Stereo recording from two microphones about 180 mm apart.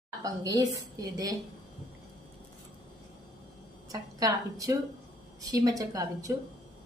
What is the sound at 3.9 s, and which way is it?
A woman's voice, 20° right (ahead or behind).